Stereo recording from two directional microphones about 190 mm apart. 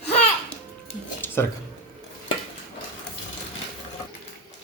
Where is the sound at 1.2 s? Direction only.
10° left (ahead or behind).